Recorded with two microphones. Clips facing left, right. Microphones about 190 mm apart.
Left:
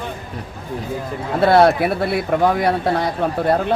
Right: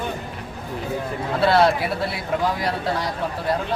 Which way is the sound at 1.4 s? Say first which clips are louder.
Left 5 dB; 50° left (ahead or behind).